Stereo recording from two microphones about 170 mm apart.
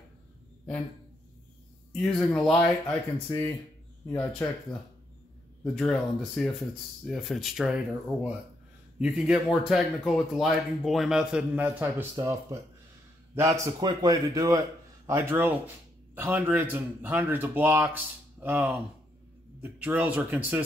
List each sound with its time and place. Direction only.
2.0 s speech: 5° left (ahead or behind)
4.1 s a man's voice: 10° left (ahead or behind); by 20.6 s 10° right (ahead or behind)